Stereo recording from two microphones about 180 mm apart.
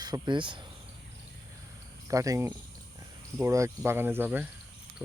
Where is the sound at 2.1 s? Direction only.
20° right (ahead or behind).